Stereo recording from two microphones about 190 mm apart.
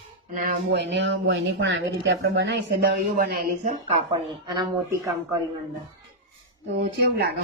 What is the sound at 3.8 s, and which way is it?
Speech, 25° right (ahead or behind).